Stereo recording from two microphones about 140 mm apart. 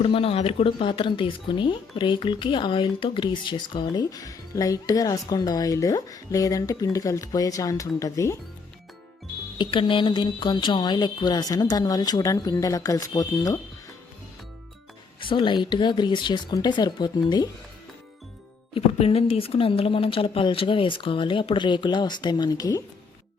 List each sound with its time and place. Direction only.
0.0 s speech: 40° left (ahead or behind); by 8.4 s 20° left (ahead or behind)
9.6 s speech: 35° left (ahead or behind)
15.2 s speech: 35° left (ahead or behind)
18.7 s speech: 45° left (ahead or behind); by 22.8 s 25° left (ahead or behind)